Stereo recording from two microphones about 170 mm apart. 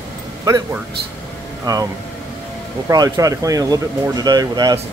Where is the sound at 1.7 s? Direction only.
20° right (ahead or behind).